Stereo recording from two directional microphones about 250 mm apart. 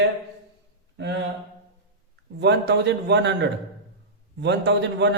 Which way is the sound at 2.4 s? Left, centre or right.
Right.